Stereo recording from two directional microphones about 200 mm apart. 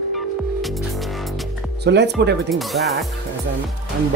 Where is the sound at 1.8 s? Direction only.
60° right (ahead or behind).